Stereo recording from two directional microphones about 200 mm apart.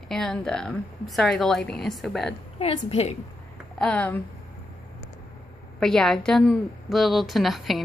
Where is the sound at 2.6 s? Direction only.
30° left (ahead or behind).